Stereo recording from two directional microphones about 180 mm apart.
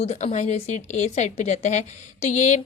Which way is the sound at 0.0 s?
35° left (ahead or behind).